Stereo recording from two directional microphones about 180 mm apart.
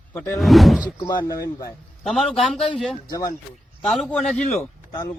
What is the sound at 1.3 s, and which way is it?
Speech, 20° left (ahead or behind).